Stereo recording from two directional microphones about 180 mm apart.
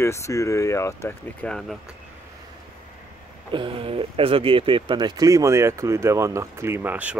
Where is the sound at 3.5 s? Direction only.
30° right (ahead or behind).